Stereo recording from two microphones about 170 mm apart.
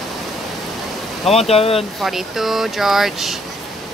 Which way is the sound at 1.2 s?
35° left (ahead or behind).